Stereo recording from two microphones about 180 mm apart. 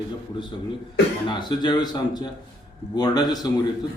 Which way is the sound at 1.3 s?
25° left (ahead or behind).